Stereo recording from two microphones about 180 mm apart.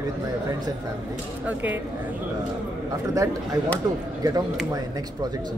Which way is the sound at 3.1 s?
20° right (ahead or behind).